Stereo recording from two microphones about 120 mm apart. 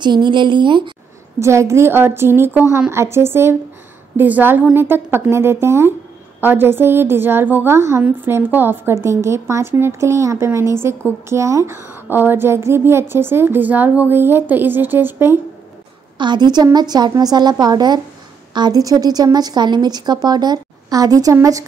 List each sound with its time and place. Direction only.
0.0 s a woman's voice: 40° right (ahead or behind)
1.4 s a woman's voice: 25° right (ahead or behind)
16.2 s a woman's voice: 40° right (ahead or behind)